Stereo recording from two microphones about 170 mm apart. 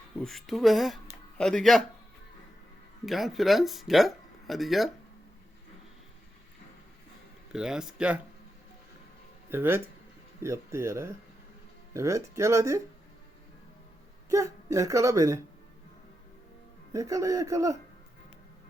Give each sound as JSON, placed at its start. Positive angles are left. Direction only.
{"t": 0.2, "sound": "speech", "side_deg": 0}
{"t": 3.1, "sound": "speech", "side_deg": 0}
{"t": 7.5, "sound": "speech", "side_deg": -5}
{"t": 9.5, "sound": "speech", "side_deg": -15}
{"t": 14.3, "sound": "speech", "side_deg": -20}
{"t": 16.9, "sound": "speech", "side_deg": -20}